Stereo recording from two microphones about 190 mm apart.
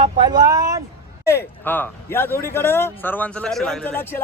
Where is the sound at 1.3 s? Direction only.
10° left (ahead or behind).